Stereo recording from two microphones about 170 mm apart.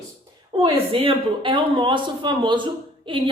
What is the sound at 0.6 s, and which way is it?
A woman's voice, 30° right (ahead or behind).